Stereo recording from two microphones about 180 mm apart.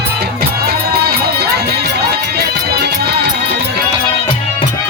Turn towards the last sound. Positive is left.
turn(degrees=-65)  # may be behind; listen again after turning